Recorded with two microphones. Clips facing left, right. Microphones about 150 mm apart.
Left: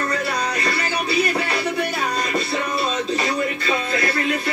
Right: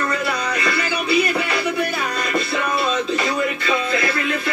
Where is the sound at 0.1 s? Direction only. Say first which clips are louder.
Right 1 dB; 35° left (ahead or behind).